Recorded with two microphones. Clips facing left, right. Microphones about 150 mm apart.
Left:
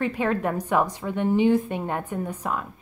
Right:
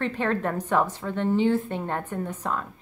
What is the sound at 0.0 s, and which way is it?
Speech, 10° left (ahead or behind).